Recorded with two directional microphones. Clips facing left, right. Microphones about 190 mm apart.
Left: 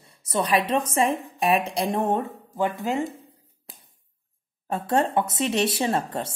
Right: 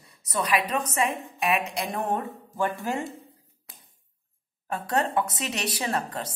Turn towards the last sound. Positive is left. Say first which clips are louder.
# left 4 dB
turn(degrees=25)  # may be behind; listen again after turning